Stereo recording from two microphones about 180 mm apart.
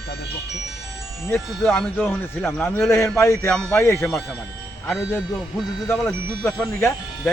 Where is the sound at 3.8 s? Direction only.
15° left (ahead or behind).